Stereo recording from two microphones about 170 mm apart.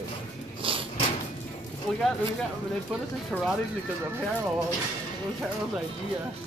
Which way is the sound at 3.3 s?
5° left (ahead or behind).